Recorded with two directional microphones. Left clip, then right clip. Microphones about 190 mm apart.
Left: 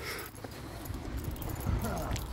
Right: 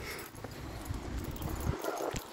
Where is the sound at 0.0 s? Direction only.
40° left (ahead or behind).